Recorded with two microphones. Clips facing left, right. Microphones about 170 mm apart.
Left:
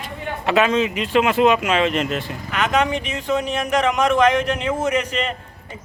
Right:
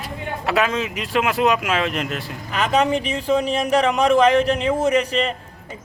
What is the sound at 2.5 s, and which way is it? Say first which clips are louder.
Speech: right 1 dB; 35° right (ahead or behind).